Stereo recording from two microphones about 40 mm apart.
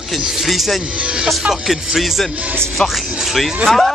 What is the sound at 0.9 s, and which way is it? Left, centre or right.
Speech, right.